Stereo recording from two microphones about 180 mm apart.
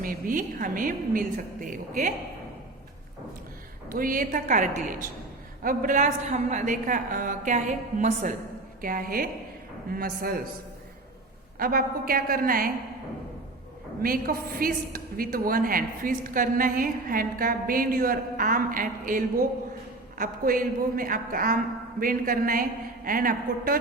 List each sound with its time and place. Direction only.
0.0 s a woman's voice: 50° right (ahead or behind)
3.8 s a woman's voice: 50° right (ahead or behind)
11.6 s a woman's voice: 55° right (ahead or behind)
14.0 s a woman's voice: 55° right (ahead or behind)